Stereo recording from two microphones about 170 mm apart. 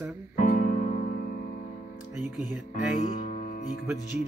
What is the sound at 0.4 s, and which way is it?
Music, 50° left (ahead or behind).